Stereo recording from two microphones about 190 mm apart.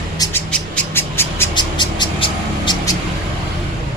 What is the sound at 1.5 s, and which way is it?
Vehicle, 25° left (ahead or behind).